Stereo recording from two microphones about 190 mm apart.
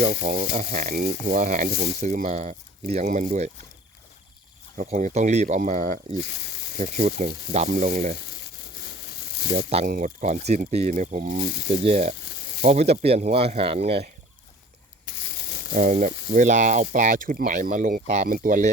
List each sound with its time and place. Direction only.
0.2 s speech: 45° right (ahead or behind)
2.8 s speech: 45° right (ahead or behind)
4.8 s speech: 40° right (ahead or behind)
9.6 s speech: 35° right (ahead or behind)
15.7 s speech: 45° right (ahead or behind)